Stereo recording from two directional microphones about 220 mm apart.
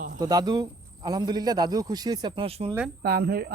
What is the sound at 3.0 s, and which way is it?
Speech, 45° right (ahead or behind).